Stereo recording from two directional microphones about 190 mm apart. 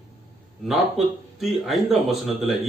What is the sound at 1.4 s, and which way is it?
A man's voice, centre (ahead or behind).